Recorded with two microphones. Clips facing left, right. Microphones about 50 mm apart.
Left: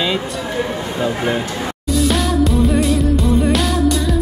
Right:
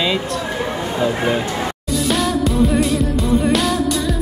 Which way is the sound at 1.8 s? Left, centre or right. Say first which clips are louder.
Left 2 dB; centre.